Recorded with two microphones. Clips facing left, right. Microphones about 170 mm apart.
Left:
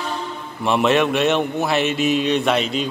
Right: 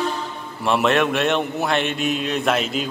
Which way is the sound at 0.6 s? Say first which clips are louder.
Left 1 dB; centre (ahead or behind).